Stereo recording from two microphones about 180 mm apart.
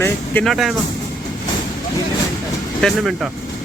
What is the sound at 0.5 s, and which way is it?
Speech, centre (ahead or behind).